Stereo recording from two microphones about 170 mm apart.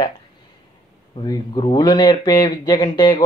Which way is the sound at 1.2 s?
30° left (ahead or behind).